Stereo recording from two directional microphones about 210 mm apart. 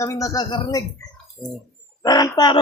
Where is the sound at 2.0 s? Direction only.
20° left (ahead or behind).